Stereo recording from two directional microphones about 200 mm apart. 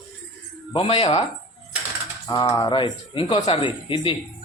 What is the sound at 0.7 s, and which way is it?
Speech, 30° left (ahead or behind).